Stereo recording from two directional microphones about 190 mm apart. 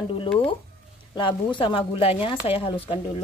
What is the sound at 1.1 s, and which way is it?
Speech, 25° left (ahead or behind).